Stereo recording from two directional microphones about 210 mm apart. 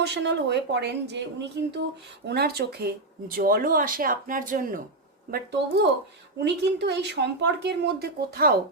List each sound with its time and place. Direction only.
0.0 s speech: 55° right (ahead or behind)
5.3 s speech: 50° right (ahead or behind)